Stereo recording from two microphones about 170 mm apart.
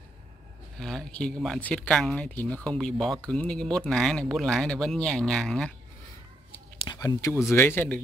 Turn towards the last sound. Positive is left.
turn(degrees=10)  # may be behind; listen again after turning